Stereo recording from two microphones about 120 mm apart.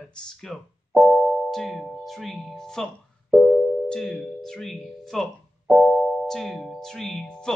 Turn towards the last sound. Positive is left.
turn(degrees=5)  # may be behind; listen again after turning